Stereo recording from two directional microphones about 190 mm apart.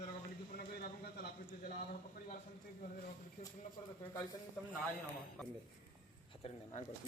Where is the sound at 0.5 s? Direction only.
55° left (ahead or behind).